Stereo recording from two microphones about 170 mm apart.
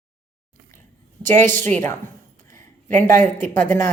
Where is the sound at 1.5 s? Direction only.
10° left (ahead or behind).